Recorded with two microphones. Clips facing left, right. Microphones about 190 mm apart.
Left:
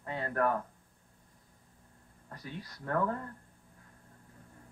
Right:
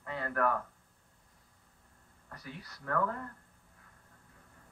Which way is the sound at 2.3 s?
30° left (ahead or behind).